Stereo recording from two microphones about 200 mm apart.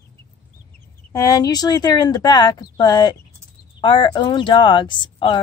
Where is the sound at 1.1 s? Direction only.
20° left (ahead or behind).